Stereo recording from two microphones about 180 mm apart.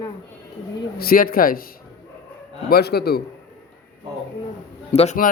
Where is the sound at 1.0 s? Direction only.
55° left (ahead or behind).